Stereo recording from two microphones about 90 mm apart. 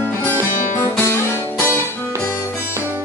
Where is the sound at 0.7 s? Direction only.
25° left (ahead or behind).